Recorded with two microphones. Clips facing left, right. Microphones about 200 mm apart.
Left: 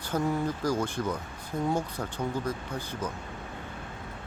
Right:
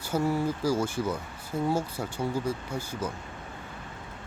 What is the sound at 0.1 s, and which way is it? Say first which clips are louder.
Speech: right 2 dB; 5° right (ahead or behind).